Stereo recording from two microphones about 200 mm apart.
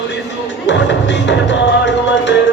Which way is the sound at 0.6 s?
65° left (ahead or behind).